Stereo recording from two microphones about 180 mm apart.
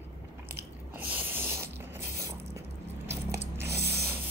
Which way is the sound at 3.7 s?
65° right (ahead or behind).